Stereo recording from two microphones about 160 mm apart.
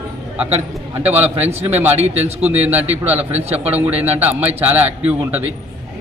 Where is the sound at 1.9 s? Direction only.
40° right (ahead or behind).